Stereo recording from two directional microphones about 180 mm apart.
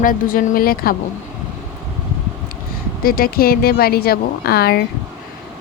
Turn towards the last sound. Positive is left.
turn(degrees=60)  # may be behind; listen again after turning